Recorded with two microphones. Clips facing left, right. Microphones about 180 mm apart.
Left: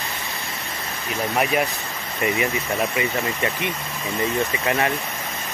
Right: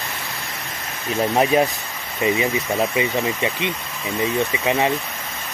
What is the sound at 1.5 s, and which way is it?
Speech, 25° right (ahead or behind).